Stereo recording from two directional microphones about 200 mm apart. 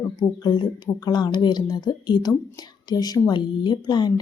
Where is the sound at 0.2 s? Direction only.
20° left (ahead or behind).